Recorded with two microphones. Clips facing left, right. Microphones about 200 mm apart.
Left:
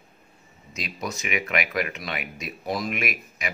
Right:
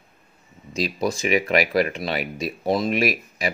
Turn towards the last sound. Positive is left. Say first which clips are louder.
# right 8 dB
turn(degrees=-35)  # may be behind; listen again after turning